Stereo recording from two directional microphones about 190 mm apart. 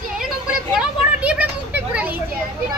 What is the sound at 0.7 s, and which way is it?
A child's voice, 5° right (ahead or behind).